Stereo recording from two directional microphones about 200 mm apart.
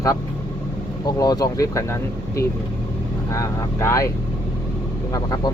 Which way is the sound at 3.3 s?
15° left (ahead or behind).